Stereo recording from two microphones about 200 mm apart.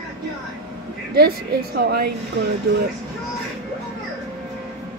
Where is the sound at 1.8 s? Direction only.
55° right (ahead or behind).